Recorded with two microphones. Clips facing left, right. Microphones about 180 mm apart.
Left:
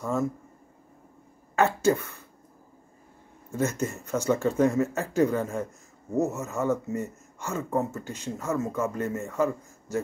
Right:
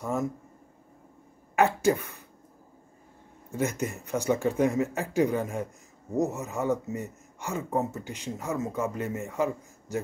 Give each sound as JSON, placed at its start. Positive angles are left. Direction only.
{"t": 0.0, "sound": "speech", "side_deg": -15}
{"t": 1.5, "sound": "speech", "side_deg": -15}
{"t": 3.5, "sound": "speech", "side_deg": -15}